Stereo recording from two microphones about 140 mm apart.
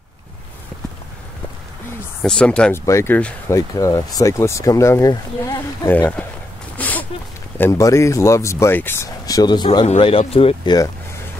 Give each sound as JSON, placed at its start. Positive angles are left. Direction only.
{"t": 2.2, "sound": "speech", "side_deg": 5}
{"t": 2.8, "sound": "speech", "side_deg": 20}
{"t": 3.5, "sound": "speech", "side_deg": 25}
{"t": 5.9, "sound": "speech", "side_deg": 10}
{"t": 6.8, "sound": "a sound", "side_deg": 10}
{"t": 7.5, "sound": "speech", "side_deg": 20}
{"t": 9.7, "sound": "speech", "side_deg": 40}